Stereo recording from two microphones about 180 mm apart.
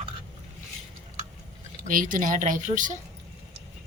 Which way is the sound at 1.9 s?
50° right (ahead or behind).